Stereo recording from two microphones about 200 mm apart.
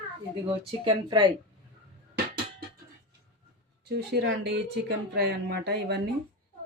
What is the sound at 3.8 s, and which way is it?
Speech, 55° right (ahead or behind).